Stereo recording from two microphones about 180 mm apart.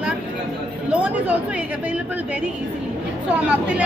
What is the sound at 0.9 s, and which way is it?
Speech, 10° right (ahead or behind).